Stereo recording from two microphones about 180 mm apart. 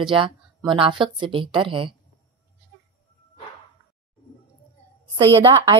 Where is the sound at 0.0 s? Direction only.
25° right (ahead or behind).